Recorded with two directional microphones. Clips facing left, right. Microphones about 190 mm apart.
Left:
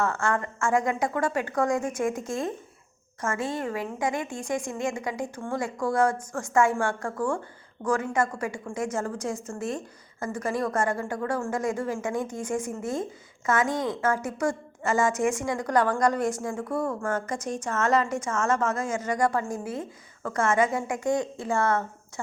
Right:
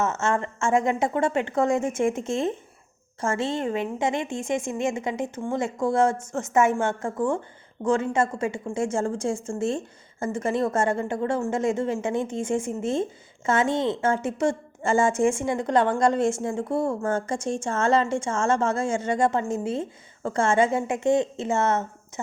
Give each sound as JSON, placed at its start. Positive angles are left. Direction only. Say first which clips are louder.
{"t": 0.0, "sound": "a woman's voice", "louder": "right 2 dB", "side_deg": -20}